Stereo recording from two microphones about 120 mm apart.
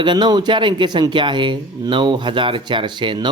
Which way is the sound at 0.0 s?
40° right (ahead or behind).